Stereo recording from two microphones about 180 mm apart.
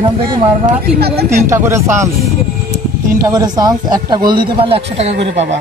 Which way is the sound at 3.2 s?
20° right (ahead or behind).